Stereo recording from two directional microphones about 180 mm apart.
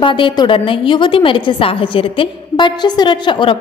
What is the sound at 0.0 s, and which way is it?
A woman's voice, 25° left (ahead or behind).